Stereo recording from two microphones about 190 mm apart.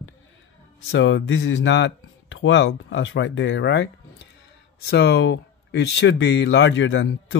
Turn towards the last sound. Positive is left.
turn(degrees=90)